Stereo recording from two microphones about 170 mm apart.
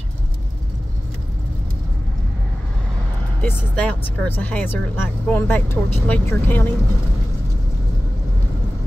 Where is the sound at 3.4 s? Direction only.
10° left (ahead or behind).